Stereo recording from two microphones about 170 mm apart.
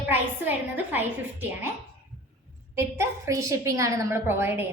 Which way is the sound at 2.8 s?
15° right (ahead or behind).